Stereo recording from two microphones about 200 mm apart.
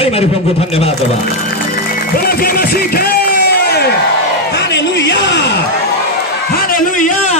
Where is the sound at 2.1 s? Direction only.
50° left (ahead or behind).